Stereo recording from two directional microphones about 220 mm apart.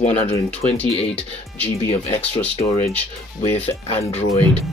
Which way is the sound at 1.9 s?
25° left (ahead or behind).